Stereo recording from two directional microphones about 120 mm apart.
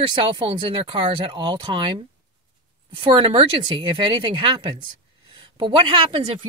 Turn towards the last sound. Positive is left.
turn(degrees=-45)  # may be behind; listen again after turning